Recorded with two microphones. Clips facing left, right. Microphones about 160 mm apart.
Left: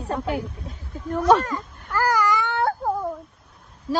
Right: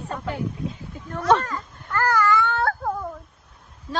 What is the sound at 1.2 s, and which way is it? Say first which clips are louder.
Baby cry: left 2 dB; 10° left (ahead or behind).